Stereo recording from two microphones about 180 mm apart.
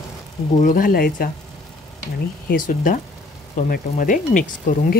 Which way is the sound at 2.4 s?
50° left (ahead or behind).